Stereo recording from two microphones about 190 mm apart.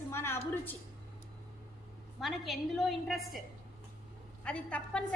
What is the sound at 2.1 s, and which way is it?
A woman's voice, centre (ahead or behind).